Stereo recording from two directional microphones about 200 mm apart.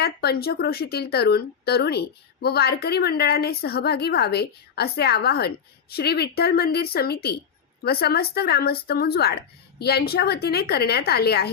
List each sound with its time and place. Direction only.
0.0 s speech: 50° left (ahead or behind)